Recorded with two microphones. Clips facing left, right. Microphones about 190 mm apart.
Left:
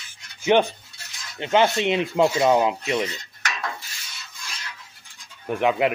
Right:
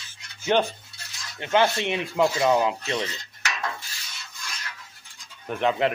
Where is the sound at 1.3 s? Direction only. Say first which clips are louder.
Left 2 dB; 20° left (ahead or behind).